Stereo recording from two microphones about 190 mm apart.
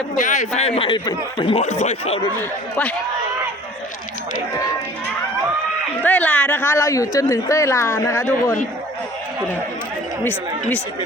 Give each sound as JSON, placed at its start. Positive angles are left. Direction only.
{"t": 0.2, "sound": "speech", "side_deg": 40}
{"t": 2.4, "sound": "a woman's voice", "side_deg": 10}
{"t": 6.0, "sound": "a woman's voice", "side_deg": 10}